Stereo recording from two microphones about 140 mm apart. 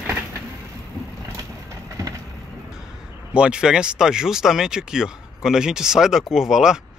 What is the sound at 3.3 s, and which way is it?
Speech, 5° right (ahead or behind).